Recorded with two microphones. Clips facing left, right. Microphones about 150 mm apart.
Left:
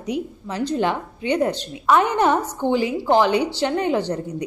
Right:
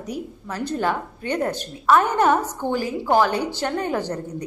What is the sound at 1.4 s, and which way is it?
A woman's voice, 15° left (ahead or behind).